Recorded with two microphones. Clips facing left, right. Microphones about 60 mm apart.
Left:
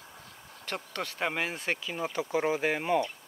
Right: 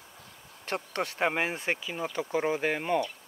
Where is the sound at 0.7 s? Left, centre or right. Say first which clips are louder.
Right 4 dB; right.